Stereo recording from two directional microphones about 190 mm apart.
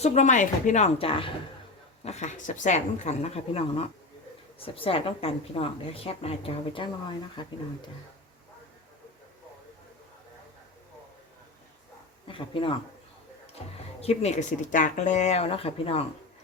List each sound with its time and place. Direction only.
0.0 s a woman's voice: 35° left (ahead or behind)
12.3 s speech: 25° left (ahead or behind)
14.0 s a woman's voice: 35° left (ahead or behind)